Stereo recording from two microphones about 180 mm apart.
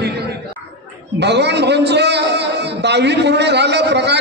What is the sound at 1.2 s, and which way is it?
A man's voice, 70° right (ahead or behind).